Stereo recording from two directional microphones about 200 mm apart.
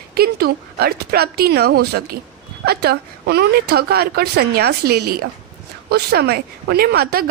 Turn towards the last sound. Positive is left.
turn(degrees=-50)  # may be behind; listen again after turning